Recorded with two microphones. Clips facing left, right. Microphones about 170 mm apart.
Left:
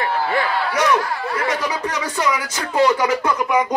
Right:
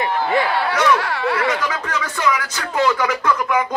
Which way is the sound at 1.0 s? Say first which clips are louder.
Right 3 dB; 70° right (ahead or behind).